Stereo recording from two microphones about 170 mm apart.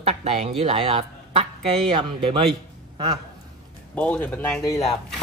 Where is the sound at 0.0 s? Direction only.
40° right (ahead or behind).